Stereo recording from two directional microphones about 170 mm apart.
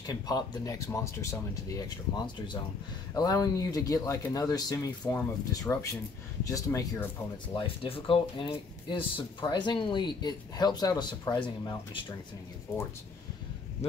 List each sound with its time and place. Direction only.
0.0 s speech: 25° left (ahead or behind)
7.5 s speech: 30° left (ahead or behind)